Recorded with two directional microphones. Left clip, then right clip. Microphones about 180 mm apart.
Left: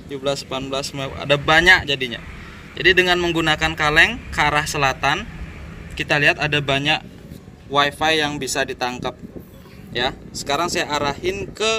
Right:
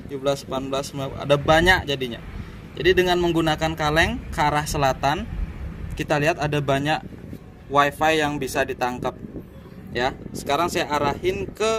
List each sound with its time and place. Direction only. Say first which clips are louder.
0.1 s speech: left 1 dB; 30° right (ahead or behind)